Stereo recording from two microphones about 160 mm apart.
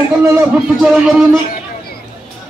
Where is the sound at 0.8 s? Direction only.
5° right (ahead or behind).